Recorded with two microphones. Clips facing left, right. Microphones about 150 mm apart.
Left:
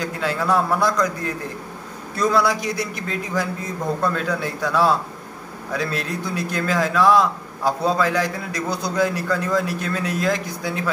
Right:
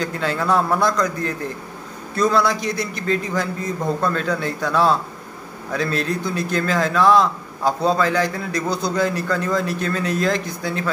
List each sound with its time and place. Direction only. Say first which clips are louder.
0.0 s a man's voice: right 1 dB; 5° left (ahead or behind)